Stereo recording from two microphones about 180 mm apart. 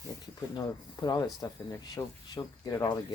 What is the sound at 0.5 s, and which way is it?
Speech, 20° left (ahead or behind).